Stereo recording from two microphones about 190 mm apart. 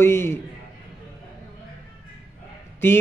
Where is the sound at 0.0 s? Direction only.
15° left (ahead or behind).